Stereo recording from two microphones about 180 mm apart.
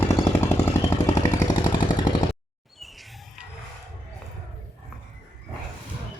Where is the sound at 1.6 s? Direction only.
25° left (ahead or behind).